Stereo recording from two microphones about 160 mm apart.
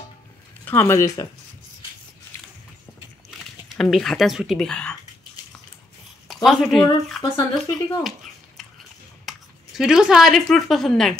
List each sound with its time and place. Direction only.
0.7 s speech: 15° left (ahead or behind)
3.3 s speech: centre (ahead or behind)
6.2 s speech: centre (ahead or behind)
7.2 s speech: 25° left (ahead or behind)
9.3 s a sound: centre (ahead or behind)
9.8 s a woman's voice: 5° right (ahead or behind)